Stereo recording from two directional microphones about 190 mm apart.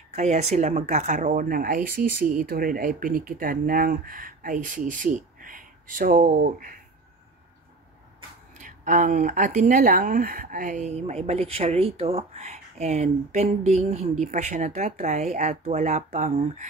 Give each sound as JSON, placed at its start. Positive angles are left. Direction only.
{"t": 0.1, "sound": "speech", "side_deg": -35}
{"t": 8.5, "sound": "speech", "side_deg": -45}